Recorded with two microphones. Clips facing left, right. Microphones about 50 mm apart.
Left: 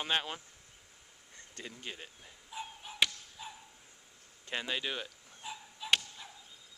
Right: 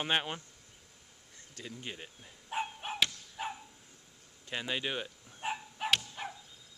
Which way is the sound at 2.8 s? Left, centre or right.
Right.